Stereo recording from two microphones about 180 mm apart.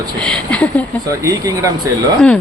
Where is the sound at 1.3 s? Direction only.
20° right (ahead or behind).